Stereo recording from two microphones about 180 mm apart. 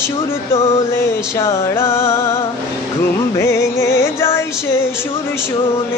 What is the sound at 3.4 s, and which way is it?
Music, 15° left (ahead or behind).